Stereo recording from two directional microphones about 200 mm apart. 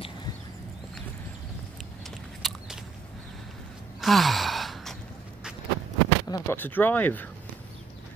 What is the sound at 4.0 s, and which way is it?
Gasp, centre (ahead or behind).